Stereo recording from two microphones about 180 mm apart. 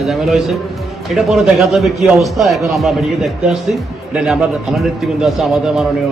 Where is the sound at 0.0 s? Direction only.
Centre (ahead or behind).